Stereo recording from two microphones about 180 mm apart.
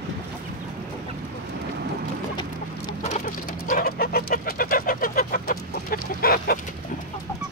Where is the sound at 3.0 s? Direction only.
40° left (ahead or behind).